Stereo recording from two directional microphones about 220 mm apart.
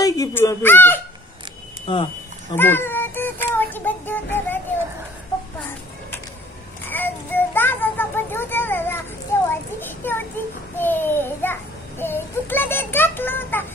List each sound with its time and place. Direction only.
0.0 s speech: 15° left (ahead or behind)
1.9 s speech: 20° left (ahead or behind)
2.5 s child singing: 10° left (ahead or behind)
6.9 s a sound: 10° left (ahead or behind)
9.5 s children playing: 10° left (ahead or behind)
10.8 s a sound: 10° left (ahead or behind)
12.0 s a child's voice: 10° left (ahead or behind)